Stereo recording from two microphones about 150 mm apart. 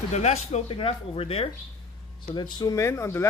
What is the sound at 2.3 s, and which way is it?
Speech, 30° left (ahead or behind).